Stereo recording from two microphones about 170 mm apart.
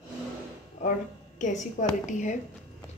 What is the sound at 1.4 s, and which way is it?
Speech, 45° left (ahead or behind).